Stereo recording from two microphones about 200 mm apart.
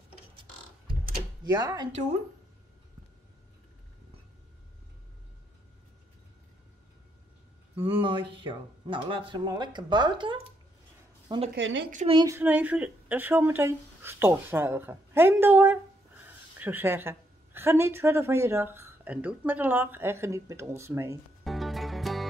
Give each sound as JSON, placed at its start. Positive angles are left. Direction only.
{"t": 1.4, "sound": "speech", "side_deg": -20}
{"t": 7.8, "sound": "speech", "side_deg": -25}
{"t": 11.5, "sound": "a woman's voice", "side_deg": -65}
{"t": 12.1, "sound": "speech", "side_deg": -20}
{"t": 12.4, "sound": "a woman's voice", "side_deg": -10}
{"t": 21.5, "sound": "music", "side_deg": 0}